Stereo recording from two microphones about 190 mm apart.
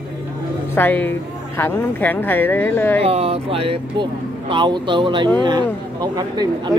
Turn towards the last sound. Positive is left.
turn(degrees=-20)  # may be behind; listen again after turning